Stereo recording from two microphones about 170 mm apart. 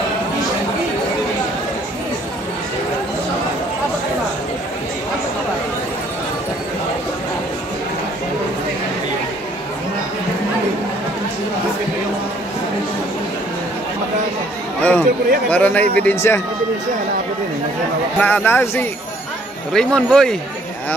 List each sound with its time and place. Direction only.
14.8 s a sound: 10° left (ahead or behind)
15.5 s speech: 10° left (ahead or behind)
18.2 s speech: 10° left (ahead or behind)